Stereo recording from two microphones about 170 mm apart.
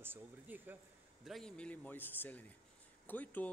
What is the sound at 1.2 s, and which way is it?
A man's voice, centre (ahead or behind).